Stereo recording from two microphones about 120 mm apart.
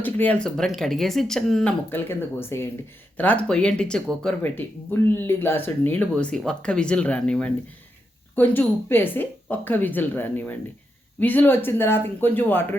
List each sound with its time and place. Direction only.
0.0 s speech: 15° left (ahead or behind)
1.9 s speech: 20° left (ahead or behind)